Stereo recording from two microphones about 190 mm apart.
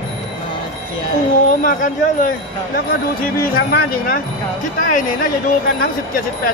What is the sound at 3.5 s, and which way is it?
Speech, 50° left (ahead or behind).